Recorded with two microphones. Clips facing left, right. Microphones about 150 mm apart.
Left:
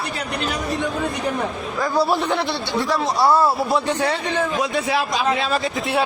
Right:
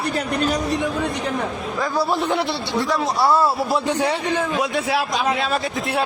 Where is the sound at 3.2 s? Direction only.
15° left (ahead or behind).